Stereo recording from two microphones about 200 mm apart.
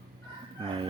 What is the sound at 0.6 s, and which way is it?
Chicken, 25° right (ahead or behind).